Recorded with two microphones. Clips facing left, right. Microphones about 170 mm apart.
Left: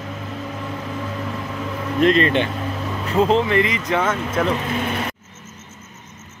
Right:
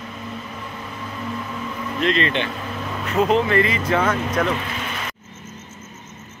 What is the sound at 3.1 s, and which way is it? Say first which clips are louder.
Speech: left 1 dB; 30° left (ahead or behind).